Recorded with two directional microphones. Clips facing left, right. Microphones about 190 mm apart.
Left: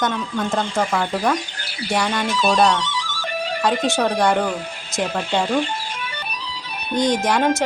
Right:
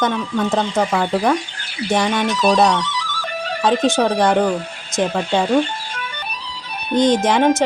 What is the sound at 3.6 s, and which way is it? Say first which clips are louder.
Speech: right 4 dB; 20° right (ahead or behind).